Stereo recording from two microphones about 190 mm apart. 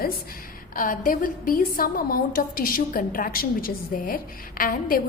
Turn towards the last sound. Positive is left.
turn(degrees=50)  # may be behind; listen again after turning